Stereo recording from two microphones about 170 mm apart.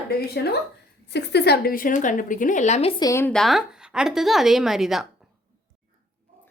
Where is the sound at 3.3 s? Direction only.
Centre (ahead or behind).